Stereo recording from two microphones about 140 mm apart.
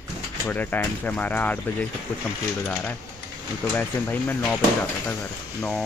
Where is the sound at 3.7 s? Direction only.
10° left (ahead or behind).